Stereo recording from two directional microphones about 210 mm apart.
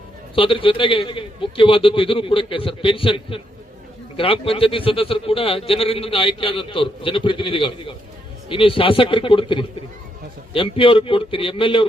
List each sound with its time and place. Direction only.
0.3 s a man's voice: 25° left (ahead or behind)